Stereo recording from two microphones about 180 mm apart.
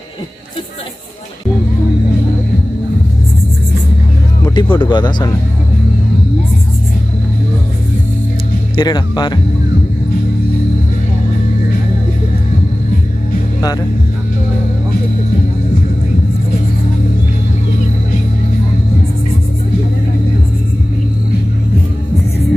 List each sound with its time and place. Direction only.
4.5 s speech: 25° left (ahead or behind)
8.7 s speech: 25° left (ahead or behind)